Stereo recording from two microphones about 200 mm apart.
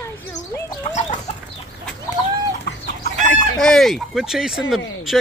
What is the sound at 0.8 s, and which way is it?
Chicken, 35° left (ahead or behind).